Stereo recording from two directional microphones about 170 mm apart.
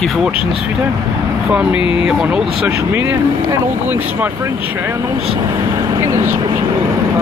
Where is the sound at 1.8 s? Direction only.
30° left (ahead or behind).